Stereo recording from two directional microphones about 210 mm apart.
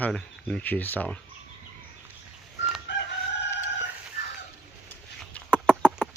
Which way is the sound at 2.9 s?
55° left (ahead or behind).